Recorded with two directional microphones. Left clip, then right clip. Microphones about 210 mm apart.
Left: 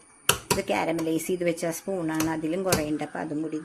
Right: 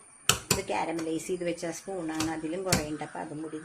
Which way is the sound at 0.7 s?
45° left (ahead or behind).